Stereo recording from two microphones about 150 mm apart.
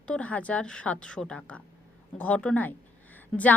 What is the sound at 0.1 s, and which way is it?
A woman's voice, 10° left (ahead or behind).